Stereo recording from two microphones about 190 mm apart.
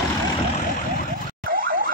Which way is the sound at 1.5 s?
45° right (ahead or behind).